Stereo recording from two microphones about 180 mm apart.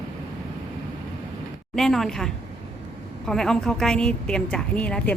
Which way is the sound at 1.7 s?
Centre (ahead or behind).